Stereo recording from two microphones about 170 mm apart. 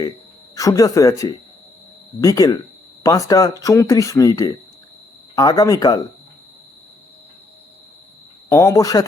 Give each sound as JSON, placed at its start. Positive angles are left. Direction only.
{"t": 0.5, "sound": "speech", "side_deg": 20}
{"t": 8.4, "sound": "speech", "side_deg": 20}